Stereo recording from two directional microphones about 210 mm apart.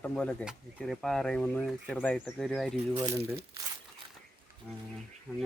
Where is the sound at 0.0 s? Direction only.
5° left (ahead or behind).